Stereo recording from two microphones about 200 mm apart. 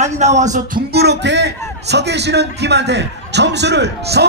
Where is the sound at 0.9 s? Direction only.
55° right (ahead or behind).